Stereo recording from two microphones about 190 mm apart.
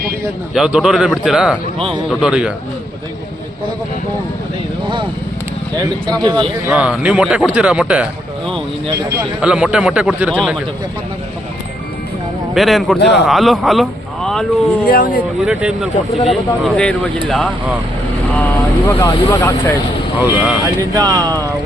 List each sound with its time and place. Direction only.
0.5 s speech: 5° right (ahead or behind)
5.7 s speech: 20° right (ahead or behind)
6.7 s speech: 5° right (ahead or behind)
12.5 s speech: centre (ahead or behind)
14.8 s speech: 50° left (ahead or behind)
15.4 s speech: 5° right (ahead or behind); by 19.7 s 15° left (ahead or behind)
20.2 s speech: 5° right (ahead or behind)
20.9 s speech: 20° right (ahead or behind)